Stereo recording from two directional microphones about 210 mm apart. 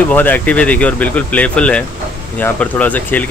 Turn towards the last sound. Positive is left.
turn(degrees=5)  # may be behind; listen again after turning